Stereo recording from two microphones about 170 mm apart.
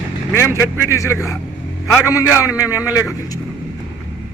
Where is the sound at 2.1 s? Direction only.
20° left (ahead or behind).